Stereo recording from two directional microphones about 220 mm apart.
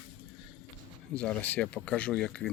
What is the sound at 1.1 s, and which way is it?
Speech, 5° left (ahead or behind).